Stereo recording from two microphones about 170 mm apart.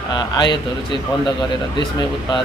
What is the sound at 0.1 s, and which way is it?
Speech, 25° left (ahead or behind).